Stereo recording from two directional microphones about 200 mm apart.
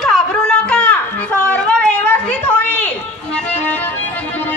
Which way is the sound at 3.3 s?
10° left (ahead or behind).